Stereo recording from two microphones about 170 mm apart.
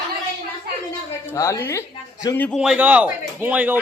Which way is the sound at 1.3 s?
20° left (ahead or behind).